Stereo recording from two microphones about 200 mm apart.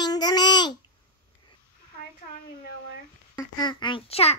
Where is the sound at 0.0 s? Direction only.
20° left (ahead or behind).